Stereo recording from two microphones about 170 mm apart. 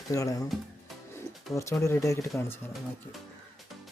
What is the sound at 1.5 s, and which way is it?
Speech, 15° left (ahead or behind).